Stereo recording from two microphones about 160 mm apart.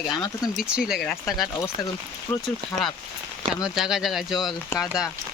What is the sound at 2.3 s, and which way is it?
Speech, 10° left (ahead or behind).